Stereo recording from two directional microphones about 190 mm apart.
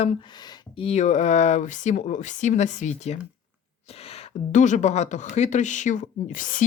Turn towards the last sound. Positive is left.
turn(degrees=45)  # may be behind; listen again after turning